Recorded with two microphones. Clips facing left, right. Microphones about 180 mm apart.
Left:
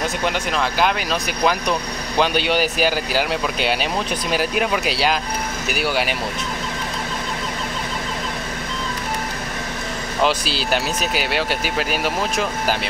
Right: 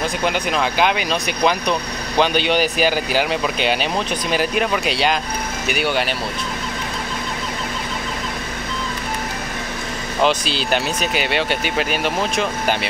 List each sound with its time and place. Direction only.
0.2 s speech: 5° right (ahead or behind)
10.2 s speech: 5° left (ahead or behind)